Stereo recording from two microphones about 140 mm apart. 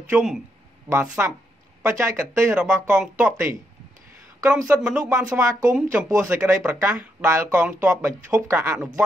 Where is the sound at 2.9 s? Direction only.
10° right (ahead or behind).